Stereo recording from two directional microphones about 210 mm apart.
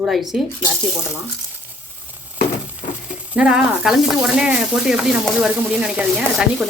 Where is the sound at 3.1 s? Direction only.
5° right (ahead or behind).